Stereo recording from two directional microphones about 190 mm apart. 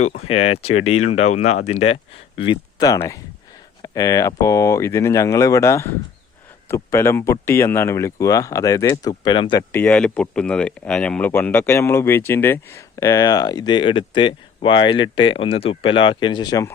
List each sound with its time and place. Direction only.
0.0 s speech: 35° left (ahead or behind)
9.7 s speech: 5° left (ahead or behind)